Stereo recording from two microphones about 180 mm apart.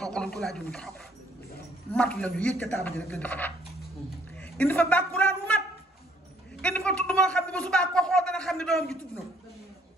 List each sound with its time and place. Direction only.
0.0 s a man's voice: 5° left (ahead or behind)
4.4 s a sound: 10° left (ahead or behind)
6.6 s a man's voice: 5° left (ahead or behind)